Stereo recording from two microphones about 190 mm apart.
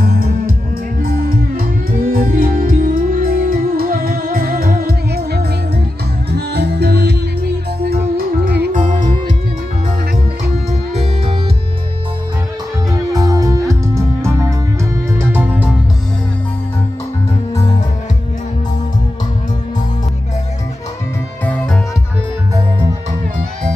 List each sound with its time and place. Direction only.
0.0 s music: 50° right (ahead or behind)
8.2 s music: 50° right (ahead or behind)
13.1 s music: 20° right (ahead or behind)
21.5 s music: 5° left (ahead or behind)